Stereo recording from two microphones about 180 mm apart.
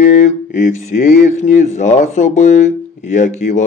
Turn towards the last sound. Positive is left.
turn(degrees=45)  # may be behind; listen again after turning